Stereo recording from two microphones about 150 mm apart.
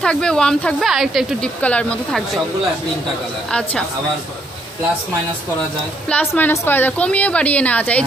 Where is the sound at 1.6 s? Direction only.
10° left (ahead or behind).